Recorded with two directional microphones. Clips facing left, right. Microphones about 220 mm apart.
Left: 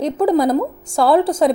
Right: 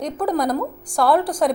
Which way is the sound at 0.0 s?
25° left (ahead or behind).